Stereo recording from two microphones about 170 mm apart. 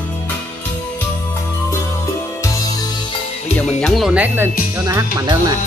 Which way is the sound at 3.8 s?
Centre (ahead or behind).